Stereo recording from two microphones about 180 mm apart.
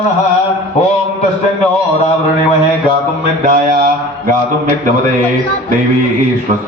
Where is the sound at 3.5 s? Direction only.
55° right (ahead or behind).